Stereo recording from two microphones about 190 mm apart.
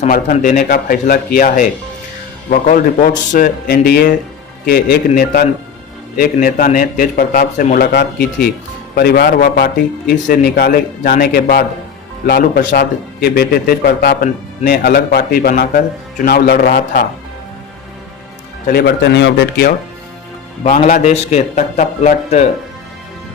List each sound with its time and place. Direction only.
0.1 s a man's voice: 45° left (ahead or behind)
18.7 s a man's voice: 60° left (ahead or behind)
20.7 s speech: 45° left (ahead or behind)